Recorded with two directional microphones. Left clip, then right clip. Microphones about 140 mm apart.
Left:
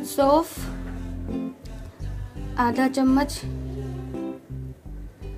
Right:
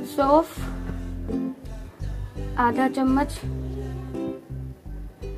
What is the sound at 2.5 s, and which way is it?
Speech, 20° left (ahead or behind).